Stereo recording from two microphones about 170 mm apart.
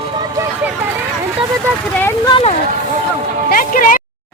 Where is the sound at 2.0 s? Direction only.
15° left (ahead or behind).